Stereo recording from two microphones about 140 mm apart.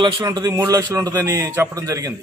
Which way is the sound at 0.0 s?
30° right (ahead or behind).